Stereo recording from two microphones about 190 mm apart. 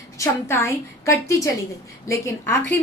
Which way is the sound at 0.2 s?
15° left (ahead or behind).